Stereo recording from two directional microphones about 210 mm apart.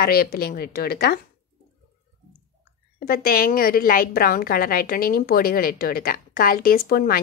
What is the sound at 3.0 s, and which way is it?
A woman's voice, 45° left (ahead or behind).